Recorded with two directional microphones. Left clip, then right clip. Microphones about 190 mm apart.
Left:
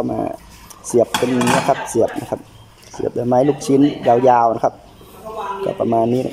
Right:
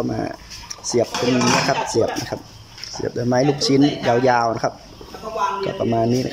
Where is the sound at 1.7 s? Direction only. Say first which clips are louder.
Left 2 dB; 15° left (ahead or behind).